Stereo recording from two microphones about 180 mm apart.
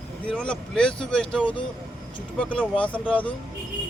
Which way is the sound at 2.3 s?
5° left (ahead or behind).